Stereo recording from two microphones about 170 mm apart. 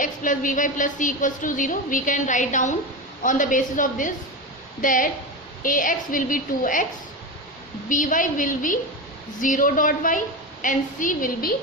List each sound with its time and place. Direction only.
0.0 s a woman's voice: 50° left (ahead or behind)
7.9 s a woman's voice: 50° left (ahead or behind)